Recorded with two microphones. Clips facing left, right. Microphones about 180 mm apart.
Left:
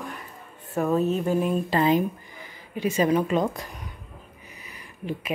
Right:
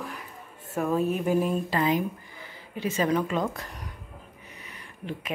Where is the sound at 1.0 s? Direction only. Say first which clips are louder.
Left 1 dB; 10° right (ahead or behind).